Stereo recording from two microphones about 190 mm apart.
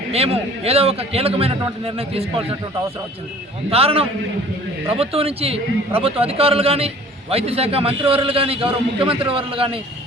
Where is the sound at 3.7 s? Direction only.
30° right (ahead or behind).